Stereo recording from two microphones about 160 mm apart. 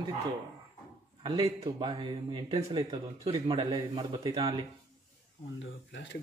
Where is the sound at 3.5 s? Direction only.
25° right (ahead or behind).